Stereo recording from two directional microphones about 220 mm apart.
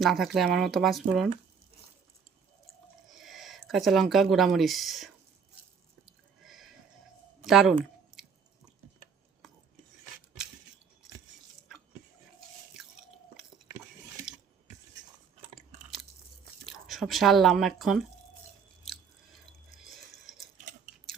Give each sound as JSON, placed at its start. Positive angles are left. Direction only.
{"t": 0.0, "sound": "speech", "side_deg": 0}
{"t": 3.1, "sound": "speech", "side_deg": 0}
{"t": 6.1, "sound": "a sound", "side_deg": 0}
{"t": 12.8, "sound": "chewing", "side_deg": 0}
{"t": 15.4, "sound": "chewing", "side_deg": -30}
{"t": 16.6, "sound": "speech", "side_deg": 0}
{"t": 19.9, "sound": "a sound", "side_deg": 0}